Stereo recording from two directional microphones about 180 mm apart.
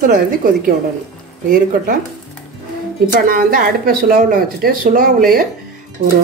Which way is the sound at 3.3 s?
55° right (ahead or behind).